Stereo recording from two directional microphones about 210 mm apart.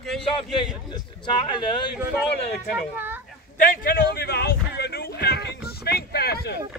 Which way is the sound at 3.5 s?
45° left (ahead or behind).